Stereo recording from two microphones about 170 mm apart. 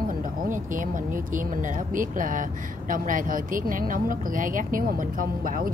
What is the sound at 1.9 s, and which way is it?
Speech, 50° right (ahead or behind).